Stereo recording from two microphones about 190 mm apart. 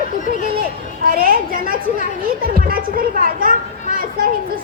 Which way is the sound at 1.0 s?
50° right (ahead or behind).